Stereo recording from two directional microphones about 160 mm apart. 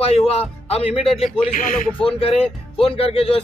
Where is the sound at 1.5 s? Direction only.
60° left (ahead or behind).